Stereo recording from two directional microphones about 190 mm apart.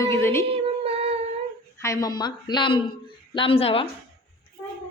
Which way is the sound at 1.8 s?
15° left (ahead or behind).